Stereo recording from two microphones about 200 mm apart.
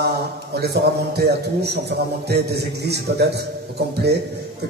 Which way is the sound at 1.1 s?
55° right (ahead or behind).